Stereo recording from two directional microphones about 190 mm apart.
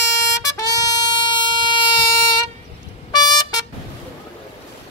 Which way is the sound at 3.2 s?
20° left (ahead or behind).